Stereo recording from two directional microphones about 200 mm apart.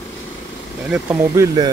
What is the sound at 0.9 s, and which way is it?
Speech, 10° right (ahead or behind).